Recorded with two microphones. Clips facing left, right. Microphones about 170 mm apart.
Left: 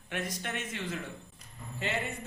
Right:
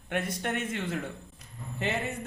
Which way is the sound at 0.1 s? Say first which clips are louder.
Right 5 dB; 55° right (ahead or behind).